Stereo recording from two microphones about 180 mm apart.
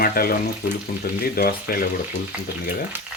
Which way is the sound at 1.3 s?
60° left (ahead or behind).